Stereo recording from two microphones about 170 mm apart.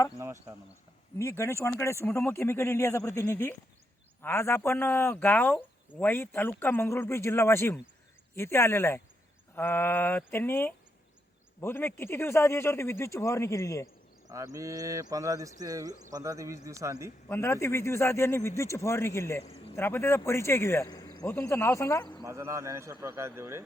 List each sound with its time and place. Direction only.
0.2 s a man's voice: 15° right (ahead or behind)
1.2 s speech: 15° left (ahead or behind)
14.3 s a man's voice: 20° right (ahead or behind)
17.2 s speech: 15° left (ahead or behind)
22.2 s a man's voice: 15° right (ahead or behind)